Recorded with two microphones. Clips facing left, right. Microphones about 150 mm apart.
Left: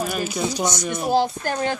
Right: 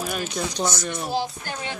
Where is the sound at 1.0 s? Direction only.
50° left (ahead or behind).